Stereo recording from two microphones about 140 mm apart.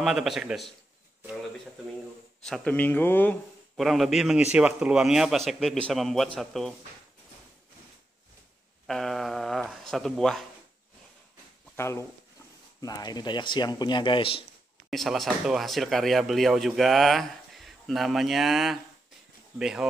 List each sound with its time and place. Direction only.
0.0 s speech: 5° right (ahead or behind)
2.4 s speech: 5° left (ahead or behind)
3.7 s speech: centre (ahead or behind)
8.8 s speech: 5° left (ahead or behind)
11.7 s speech: 20° left (ahead or behind)
12.8 s speech: 30° left (ahead or behind)
14.9 s speech: centre (ahead or behind)